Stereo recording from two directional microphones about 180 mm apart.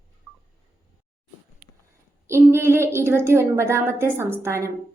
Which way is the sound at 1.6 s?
60° right (ahead or behind).